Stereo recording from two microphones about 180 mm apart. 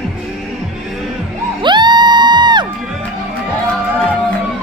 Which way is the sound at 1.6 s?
25° right (ahead or behind).